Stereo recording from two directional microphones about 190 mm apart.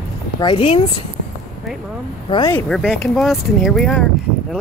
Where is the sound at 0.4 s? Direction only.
25° left (ahead or behind).